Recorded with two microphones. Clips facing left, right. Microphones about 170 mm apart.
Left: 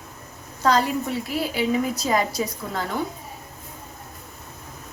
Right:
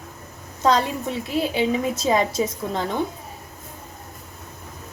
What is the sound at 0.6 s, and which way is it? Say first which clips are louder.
A woman's voice: right 1 dB; 20° right (ahead or behind).